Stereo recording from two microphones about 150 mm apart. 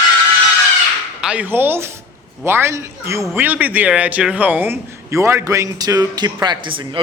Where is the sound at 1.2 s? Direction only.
10° right (ahead or behind).